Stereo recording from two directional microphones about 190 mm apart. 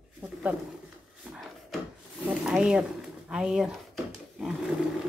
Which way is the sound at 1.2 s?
Centre (ahead or behind).